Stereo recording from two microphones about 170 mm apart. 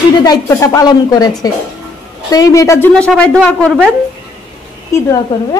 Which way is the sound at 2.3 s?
20° left (ahead or behind).